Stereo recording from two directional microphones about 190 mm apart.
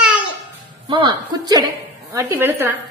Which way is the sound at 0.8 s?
25° right (ahead or behind).